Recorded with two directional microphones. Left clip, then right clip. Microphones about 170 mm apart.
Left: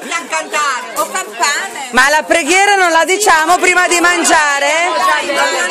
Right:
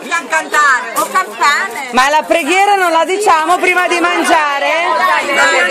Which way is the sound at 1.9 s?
20° left (ahead or behind).